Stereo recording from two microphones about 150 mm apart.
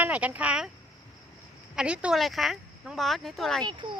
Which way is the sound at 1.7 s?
5° right (ahead or behind).